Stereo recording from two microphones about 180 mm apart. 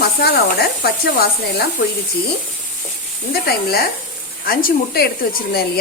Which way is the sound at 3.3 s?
60° left (ahead or behind).